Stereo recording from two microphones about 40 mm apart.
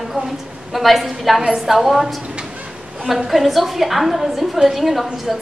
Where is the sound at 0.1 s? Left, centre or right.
Centre.